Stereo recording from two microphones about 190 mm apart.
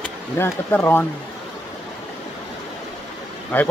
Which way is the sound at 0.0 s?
10° left (ahead or behind).